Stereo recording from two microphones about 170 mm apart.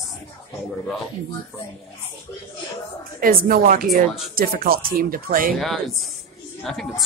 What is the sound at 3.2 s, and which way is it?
Speech, 60° right (ahead or behind).